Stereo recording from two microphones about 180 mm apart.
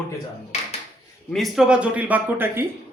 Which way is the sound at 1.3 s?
Centre (ahead or behind).